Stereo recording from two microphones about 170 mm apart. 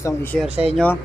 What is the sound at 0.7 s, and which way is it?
Speech, 10° left (ahead or behind).